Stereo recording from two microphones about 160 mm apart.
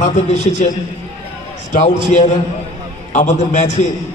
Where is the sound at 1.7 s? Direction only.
45° left (ahead or behind).